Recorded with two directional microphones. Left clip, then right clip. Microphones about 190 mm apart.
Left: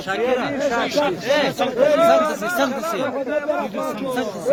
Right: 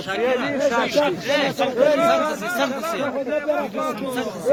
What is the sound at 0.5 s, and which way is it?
Speech, 45° right (ahead or behind).